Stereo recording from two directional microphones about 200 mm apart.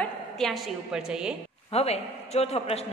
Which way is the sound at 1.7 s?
30° left (ahead or behind).